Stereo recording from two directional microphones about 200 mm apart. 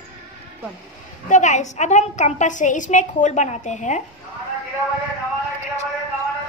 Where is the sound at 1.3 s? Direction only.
40° left (ahead or behind).